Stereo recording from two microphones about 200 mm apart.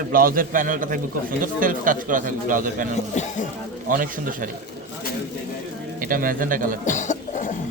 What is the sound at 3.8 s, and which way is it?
Speech, 45° right (ahead or behind).